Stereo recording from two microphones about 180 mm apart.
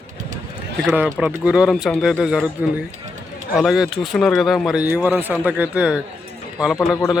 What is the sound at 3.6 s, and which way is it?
Speech, 5° right (ahead or behind).